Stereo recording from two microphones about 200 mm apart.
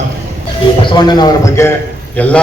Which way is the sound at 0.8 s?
20° left (ahead or behind).